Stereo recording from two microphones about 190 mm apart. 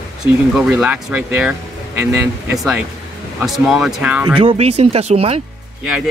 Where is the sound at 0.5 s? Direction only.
5° right (ahead or behind).